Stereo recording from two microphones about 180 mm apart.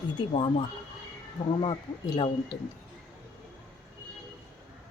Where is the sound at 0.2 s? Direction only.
30° left (ahead or behind).